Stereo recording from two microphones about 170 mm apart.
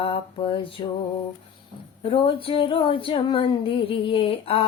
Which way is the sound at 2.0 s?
30° left (ahead or behind).